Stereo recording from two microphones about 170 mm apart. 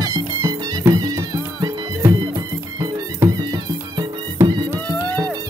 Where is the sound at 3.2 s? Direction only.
25° right (ahead or behind).